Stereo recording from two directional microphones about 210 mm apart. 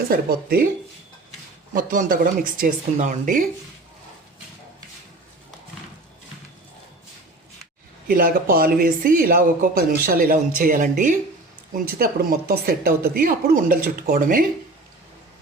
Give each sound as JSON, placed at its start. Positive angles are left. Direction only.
{"t": 0.0, "sound": "speech", "side_deg": -45}
{"t": 1.7, "sound": "speech", "side_deg": -40}
{"t": 8.0, "sound": "speech", "side_deg": -45}